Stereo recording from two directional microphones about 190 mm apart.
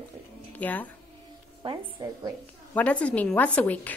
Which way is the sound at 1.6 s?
25° right (ahead or behind).